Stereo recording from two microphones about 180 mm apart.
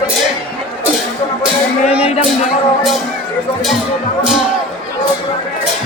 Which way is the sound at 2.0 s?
35° left (ahead or behind).